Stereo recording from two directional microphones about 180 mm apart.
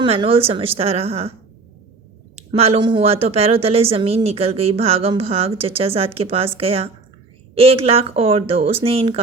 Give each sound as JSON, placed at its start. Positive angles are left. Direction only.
{"t": 0.0, "sound": "a woman's voice", "side_deg": -30}
{"t": 2.3, "sound": "a woman's voice", "side_deg": -35}